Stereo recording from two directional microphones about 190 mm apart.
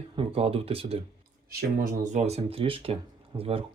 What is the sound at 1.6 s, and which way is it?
Speech, 45° right (ahead or behind).